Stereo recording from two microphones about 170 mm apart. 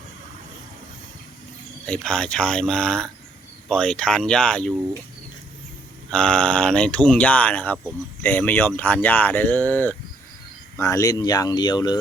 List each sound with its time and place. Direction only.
1.9 s speech: 5° left (ahead or behind)
6.1 s speech: 5° left (ahead or behind); by 11.9 s 25° left (ahead or behind)